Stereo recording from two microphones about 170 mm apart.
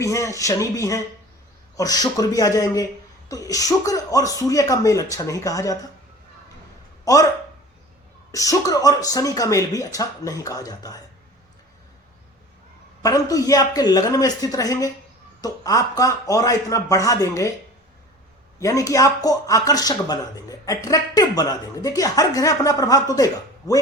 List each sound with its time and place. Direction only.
0.0 s speech: 20° left (ahead or behind)
7.0 s speech: 20° left (ahead or behind)
8.3 s speech: 20° left (ahead or behind)
13.0 s speech: 20° left (ahead or behind)
18.6 s speech: 20° left (ahead or behind)